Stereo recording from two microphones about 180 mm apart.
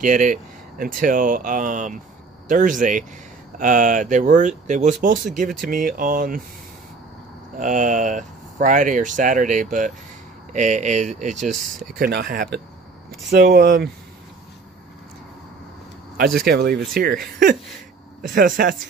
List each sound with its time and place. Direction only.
0.0 s speech: 45° right (ahead or behind)
7.5 s speech: 45° right (ahead or behind)
12.0 s speech: 55° right (ahead or behind)
16.4 s speech: 65° right (ahead or behind)